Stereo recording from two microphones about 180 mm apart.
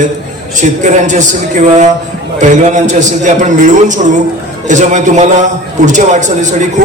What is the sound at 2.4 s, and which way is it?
A man's voice, 40° right (ahead or behind).